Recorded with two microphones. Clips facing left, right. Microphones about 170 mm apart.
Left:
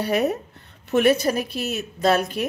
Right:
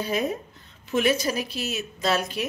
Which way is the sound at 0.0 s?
70° left (ahead or behind).